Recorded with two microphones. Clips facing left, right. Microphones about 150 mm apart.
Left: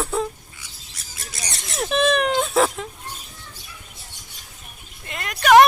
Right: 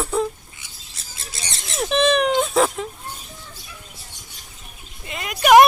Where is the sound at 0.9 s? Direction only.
25° right (ahead or behind).